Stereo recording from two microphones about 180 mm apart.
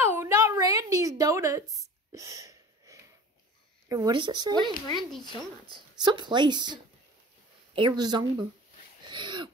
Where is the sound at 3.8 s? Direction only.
20° right (ahead or behind).